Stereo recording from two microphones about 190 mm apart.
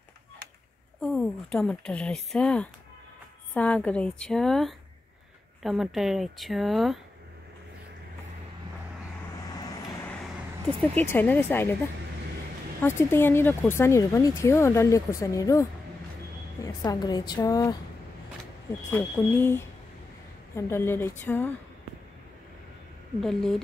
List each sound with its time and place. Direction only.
1.0 s speech: 5° left (ahead or behind)
11.0 s speech: 10° left (ahead or behind)
12.8 s speech: 10° left (ahead or behind)
16.6 s a woman's voice: 20° left (ahead or behind)
23.2 s speech: centre (ahead or behind)